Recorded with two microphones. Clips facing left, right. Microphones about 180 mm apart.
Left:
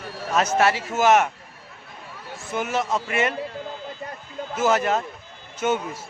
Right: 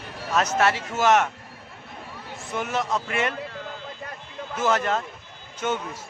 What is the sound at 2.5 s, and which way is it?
Speech, 5° left (ahead or behind).